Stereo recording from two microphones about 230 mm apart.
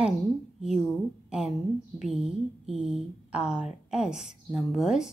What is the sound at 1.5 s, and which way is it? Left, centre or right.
Speech, centre.